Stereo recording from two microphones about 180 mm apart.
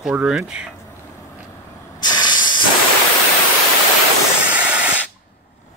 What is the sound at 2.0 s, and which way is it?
Hiss, 25° left (ahead or behind).